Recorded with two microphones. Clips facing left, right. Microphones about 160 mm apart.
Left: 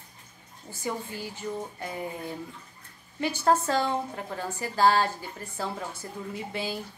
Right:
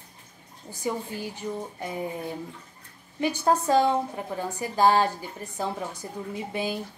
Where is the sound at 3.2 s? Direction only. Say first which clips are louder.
Right 1 dB; 15° right (ahead or behind).